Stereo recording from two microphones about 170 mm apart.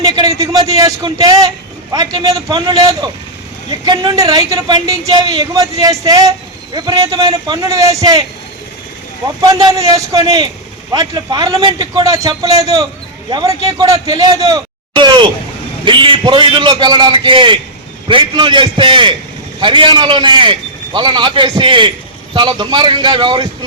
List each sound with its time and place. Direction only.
0.3 s a man's voice: 20° right (ahead or behind)
9.2 s a man's voice: 20° right (ahead or behind)